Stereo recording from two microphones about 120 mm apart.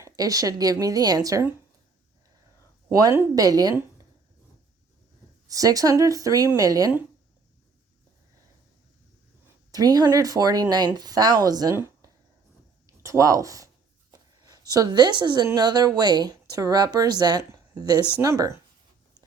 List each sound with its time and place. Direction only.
0.0 s speech: 30° right (ahead or behind)
2.9 s speech: 30° right (ahead or behind)
5.5 s speech: 30° right (ahead or behind)
9.7 s speech: 35° right (ahead or behind)
11.7 s a sound: 20° right (ahead or behind)
13.0 s speech: 25° right (ahead or behind)
14.1 s a sound: 30° right (ahead or behind)
15.5 s speech: 35° right (ahead or behind)